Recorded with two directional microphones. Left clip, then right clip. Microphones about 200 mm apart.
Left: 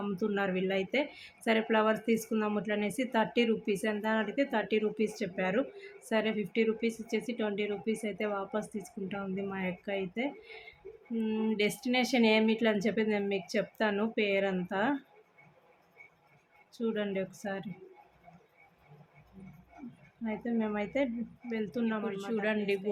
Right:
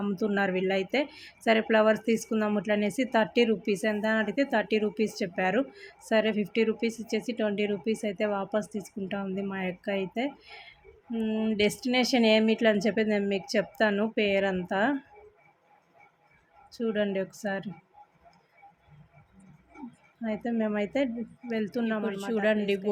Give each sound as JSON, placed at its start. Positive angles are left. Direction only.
{"t": 0.0, "sound": "speech", "side_deg": -20}
{"t": 16.7, "sound": "speech", "side_deg": -20}
{"t": 20.2, "sound": "speech", "side_deg": -20}